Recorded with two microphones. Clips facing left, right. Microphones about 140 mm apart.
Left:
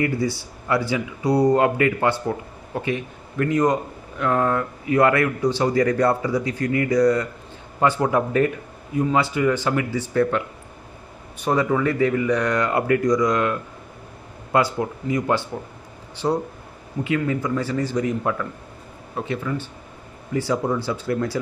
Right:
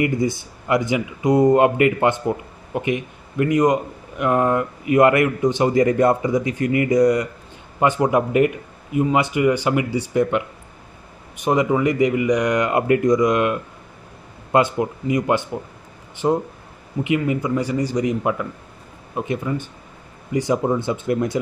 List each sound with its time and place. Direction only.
0.0 s speech: 15° right (ahead or behind)